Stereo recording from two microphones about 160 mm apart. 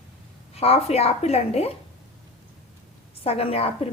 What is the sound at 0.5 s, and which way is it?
A woman's voice, 40° left (ahead or behind).